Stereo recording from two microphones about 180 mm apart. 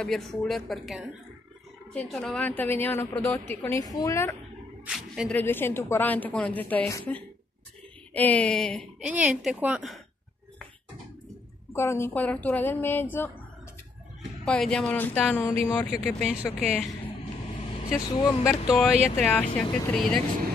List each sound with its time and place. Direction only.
0.0 s a woman's voice: centre (ahead or behind)
4.8 s speech: 5° right (ahead or behind)
5.3 s a woman's voice: 10° left (ahead or behind); by 9.9 s 5° right (ahead or behind)
11.7 s a woman's voice: 15° left (ahead or behind)
14.4 s speech: 5° left (ahead or behind)
15.9 s speech: centre (ahead or behind)
17.8 s a woman's voice: 15° left (ahead or behind)
18.5 s a woman's voice: 5° left (ahead or behind)